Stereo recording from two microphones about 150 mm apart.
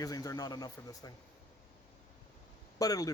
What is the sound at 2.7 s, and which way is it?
Speech, 25° left (ahead or behind).